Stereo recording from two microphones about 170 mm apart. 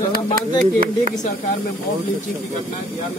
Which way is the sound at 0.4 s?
55° right (ahead or behind).